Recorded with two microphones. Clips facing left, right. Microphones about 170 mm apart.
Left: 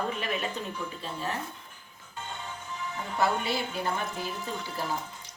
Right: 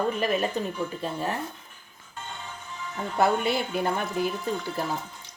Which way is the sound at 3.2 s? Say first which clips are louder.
Right 5 dB; 55° right (ahead or behind).